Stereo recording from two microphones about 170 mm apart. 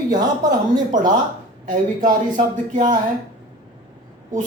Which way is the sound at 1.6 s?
50° right (ahead or behind).